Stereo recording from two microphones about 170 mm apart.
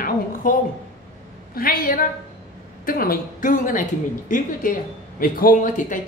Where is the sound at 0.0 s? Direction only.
55° left (ahead or behind).